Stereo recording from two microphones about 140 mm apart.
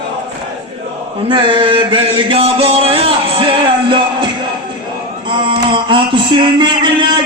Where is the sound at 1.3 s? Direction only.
35° right (ahead or behind).